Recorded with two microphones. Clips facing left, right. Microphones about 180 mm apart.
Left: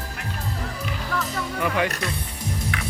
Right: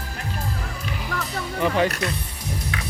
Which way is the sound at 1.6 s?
30° right (ahead or behind).